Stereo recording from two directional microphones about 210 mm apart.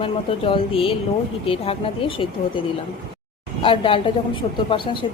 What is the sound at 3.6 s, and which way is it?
Speech, 25° left (ahead or behind).